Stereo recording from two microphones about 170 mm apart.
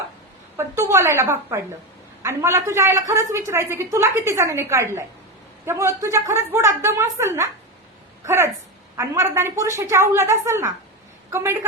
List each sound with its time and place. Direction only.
0.5 s a woman's voice: 15° right (ahead or behind)
9.0 s a woman's voice: 15° right (ahead or behind)